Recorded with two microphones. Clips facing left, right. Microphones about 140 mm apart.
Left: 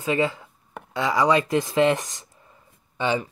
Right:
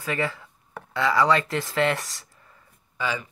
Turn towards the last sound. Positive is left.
turn(degrees=25)  # may be behind; listen again after turning